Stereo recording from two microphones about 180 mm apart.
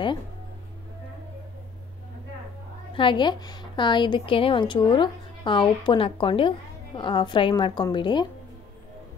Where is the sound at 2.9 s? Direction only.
25° left (ahead or behind).